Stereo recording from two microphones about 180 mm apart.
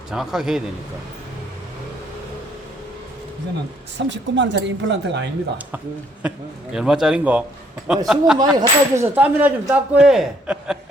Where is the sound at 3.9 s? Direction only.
90° right.